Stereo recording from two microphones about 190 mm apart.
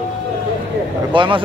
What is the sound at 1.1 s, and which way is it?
Speech, 25° right (ahead or behind).